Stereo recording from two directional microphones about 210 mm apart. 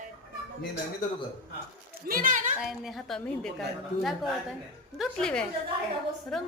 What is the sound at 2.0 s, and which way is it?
Speech, 40° right (ahead or behind).